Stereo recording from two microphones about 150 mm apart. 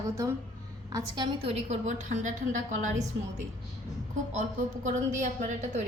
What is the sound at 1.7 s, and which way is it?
Speech, 55° right (ahead or behind).